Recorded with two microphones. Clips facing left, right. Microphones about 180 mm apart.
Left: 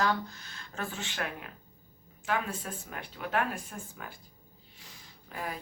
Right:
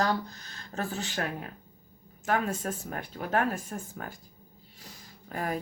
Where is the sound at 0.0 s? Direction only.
40° right (ahead or behind).